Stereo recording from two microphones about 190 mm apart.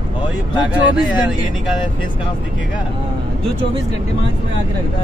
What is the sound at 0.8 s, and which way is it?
Speech, 25° left (ahead or behind).